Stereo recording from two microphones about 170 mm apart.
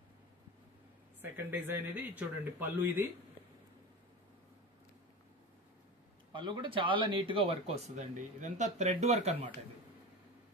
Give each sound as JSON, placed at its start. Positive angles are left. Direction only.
{"t": 1.2, "sound": "speech", "side_deg": -10}
{"t": 6.3, "sound": "speech", "side_deg": -25}
{"t": 7.9, "sound": "speech", "side_deg": -45}